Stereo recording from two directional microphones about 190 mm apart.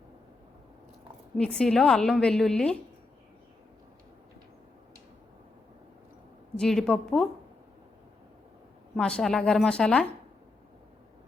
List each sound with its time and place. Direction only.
1.4 s a woman's voice: 5° left (ahead or behind)
6.6 s a woman's voice: centre (ahead or behind)
9.0 s a woman's voice: 5° left (ahead or behind)